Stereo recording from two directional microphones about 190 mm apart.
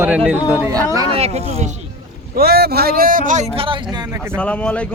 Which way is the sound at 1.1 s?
35° right (ahead or behind).